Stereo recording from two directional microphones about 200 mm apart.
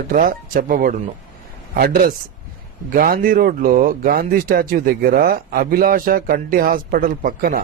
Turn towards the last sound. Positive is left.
turn(degrees=-45)  # may be behind; listen again after turning